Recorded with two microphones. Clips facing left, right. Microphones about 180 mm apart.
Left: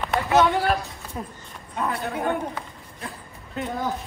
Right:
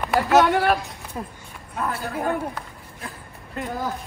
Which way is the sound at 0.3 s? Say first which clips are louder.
Right 2 dB; 70° right (ahead or behind).